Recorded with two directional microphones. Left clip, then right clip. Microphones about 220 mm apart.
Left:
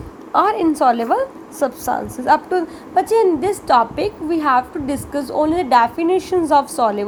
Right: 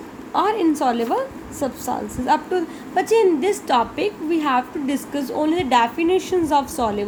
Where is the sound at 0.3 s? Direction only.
20° left (ahead or behind).